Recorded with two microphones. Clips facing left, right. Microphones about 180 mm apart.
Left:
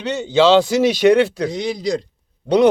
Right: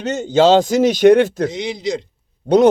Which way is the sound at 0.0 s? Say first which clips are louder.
Right 1 dB; 45° right (ahead or behind).